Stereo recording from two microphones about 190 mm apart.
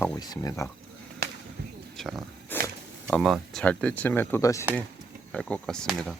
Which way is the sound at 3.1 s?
Centre (ahead or behind).